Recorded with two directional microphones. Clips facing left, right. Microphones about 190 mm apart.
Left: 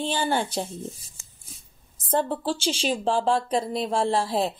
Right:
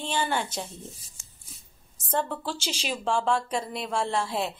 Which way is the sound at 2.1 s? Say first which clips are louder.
Left 5 dB; 30° left (ahead or behind).